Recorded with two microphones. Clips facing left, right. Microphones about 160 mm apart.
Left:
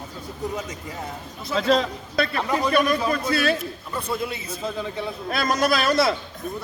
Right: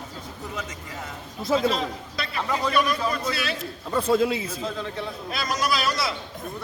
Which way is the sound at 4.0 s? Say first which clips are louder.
Right 7 dB; 90° right.